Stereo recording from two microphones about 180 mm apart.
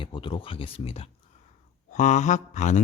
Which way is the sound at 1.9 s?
45° left (ahead or behind).